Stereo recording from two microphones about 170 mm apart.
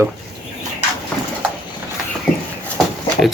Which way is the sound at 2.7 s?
Centre (ahead or behind).